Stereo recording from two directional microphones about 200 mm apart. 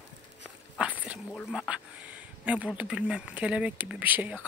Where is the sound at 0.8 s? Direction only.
5° right (ahead or behind).